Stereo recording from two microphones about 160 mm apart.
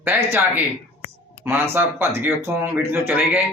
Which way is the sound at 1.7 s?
15° right (ahead or behind).